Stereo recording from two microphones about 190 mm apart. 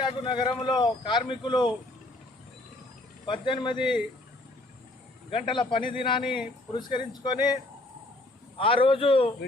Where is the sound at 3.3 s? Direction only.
25° left (ahead or behind).